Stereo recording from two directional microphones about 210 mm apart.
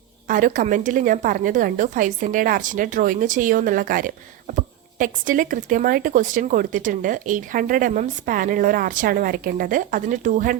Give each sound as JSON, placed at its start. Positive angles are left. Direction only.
{"t": 0.3, "sound": "a woman's voice", "side_deg": -40}